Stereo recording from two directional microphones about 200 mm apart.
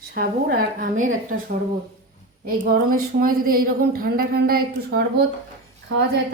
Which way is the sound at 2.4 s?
45° right (ahead or behind).